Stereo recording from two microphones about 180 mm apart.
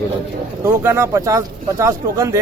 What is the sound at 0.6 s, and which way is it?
Speech, 15° right (ahead or behind).